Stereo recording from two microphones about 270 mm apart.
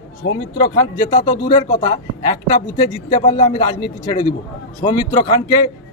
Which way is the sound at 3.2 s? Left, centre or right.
Centre.